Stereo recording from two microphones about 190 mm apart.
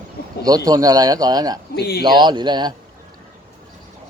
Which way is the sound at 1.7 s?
55° left (ahead or behind).